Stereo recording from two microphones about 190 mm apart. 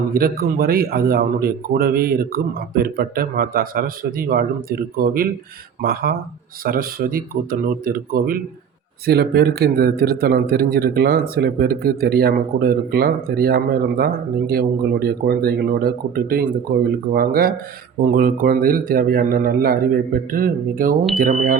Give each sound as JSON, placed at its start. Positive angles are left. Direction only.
{"t": 0.1, "sound": "a man's voice", "side_deg": -50}